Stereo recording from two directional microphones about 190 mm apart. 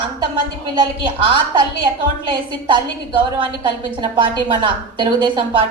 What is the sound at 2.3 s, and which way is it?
A woman's voice, 25° right (ahead or behind).